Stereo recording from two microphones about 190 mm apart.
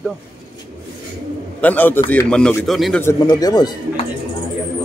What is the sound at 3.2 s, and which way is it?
Speech, 20° left (ahead or behind).